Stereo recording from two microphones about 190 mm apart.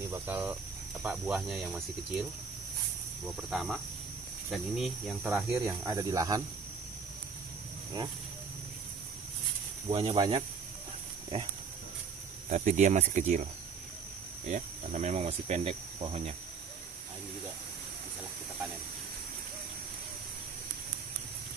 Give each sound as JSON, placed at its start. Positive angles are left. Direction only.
{"t": 0.1, "sound": "speech", "side_deg": -10}
{"t": 3.4, "sound": "speech", "side_deg": 0}
{"t": 5.3, "sound": "speech", "side_deg": -15}
{"t": 9.8, "sound": "speech", "side_deg": -25}
{"t": 12.4, "sound": "speech", "side_deg": -40}